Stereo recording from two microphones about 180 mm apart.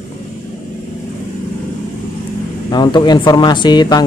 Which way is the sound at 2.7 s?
25° left (ahead or behind).